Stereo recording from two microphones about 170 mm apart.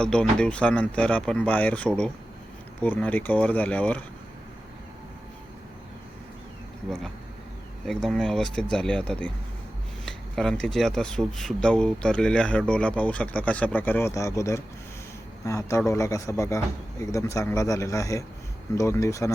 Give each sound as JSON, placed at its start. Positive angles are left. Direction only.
{"t": 0.0, "sound": "speech", "side_deg": 5}
{"t": 7.9, "sound": "speech", "side_deg": 5}